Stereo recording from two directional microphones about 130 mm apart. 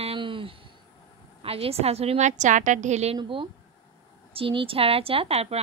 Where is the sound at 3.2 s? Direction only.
40° right (ahead or behind).